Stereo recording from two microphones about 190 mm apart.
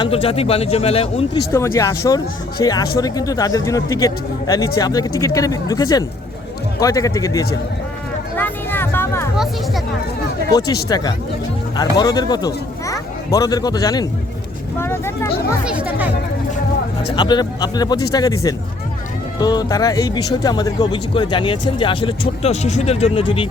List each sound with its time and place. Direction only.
0.0 s speech: 30° left (ahead or behind)
1.5 s speech: 15° left (ahead or behind)
8.4 s music: 10° left (ahead or behind)
9.3 s music: centre (ahead or behind)
10.5 s speech: 20° left (ahead or behind)
15.6 s speech: 5° right (ahead or behind)
17.2 s speech: 20° left (ahead or behind)